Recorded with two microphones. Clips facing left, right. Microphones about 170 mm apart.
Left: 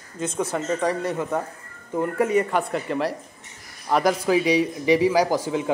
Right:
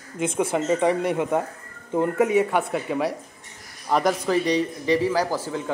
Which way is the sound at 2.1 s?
5° right (ahead or behind).